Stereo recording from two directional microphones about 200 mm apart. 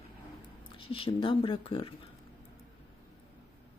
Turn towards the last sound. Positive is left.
turn(degrees=25)  # may be behind; listen again after turning